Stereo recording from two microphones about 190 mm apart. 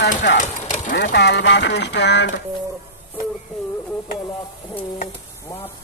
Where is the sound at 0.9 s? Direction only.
65° left (ahead or behind).